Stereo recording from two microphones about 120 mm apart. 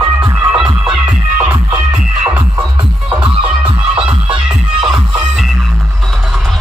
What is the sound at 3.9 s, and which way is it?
Music, 10° right (ahead or behind).